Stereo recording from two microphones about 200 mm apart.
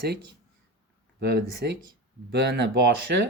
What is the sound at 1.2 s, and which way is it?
Speech, 55° right (ahead or behind).